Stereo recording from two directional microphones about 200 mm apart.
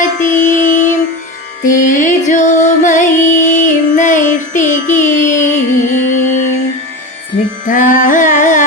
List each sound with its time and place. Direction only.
0.0 s music: 40° left (ahead or behind)
7.7 s carnatic music: 40° left (ahead or behind)